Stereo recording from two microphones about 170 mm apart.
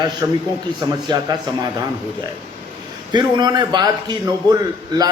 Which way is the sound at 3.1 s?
25° right (ahead or behind).